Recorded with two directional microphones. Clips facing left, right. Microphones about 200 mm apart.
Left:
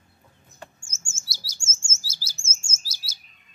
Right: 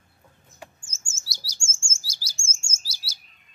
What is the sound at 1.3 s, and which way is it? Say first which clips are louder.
Chirp: even; 10° right (ahead or behind).